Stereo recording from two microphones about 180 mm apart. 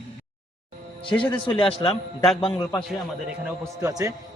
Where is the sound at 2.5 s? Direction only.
20° left (ahead or behind).